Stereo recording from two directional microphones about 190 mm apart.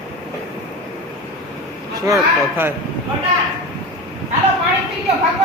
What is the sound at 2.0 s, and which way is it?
Speech, 15° right (ahead or behind).